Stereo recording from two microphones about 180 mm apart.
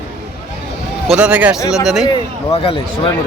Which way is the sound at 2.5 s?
30° left (ahead or behind).